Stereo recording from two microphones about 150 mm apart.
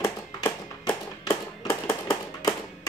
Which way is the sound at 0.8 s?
25° left (ahead or behind).